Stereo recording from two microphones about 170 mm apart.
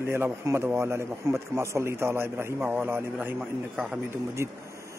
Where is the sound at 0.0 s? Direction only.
15° right (ahead or behind).